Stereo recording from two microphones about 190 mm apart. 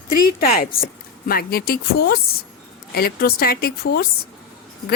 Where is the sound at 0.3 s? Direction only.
50° left (ahead or behind).